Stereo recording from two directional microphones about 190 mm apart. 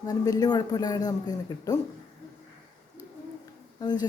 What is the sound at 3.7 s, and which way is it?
Speech, 20° left (ahead or behind).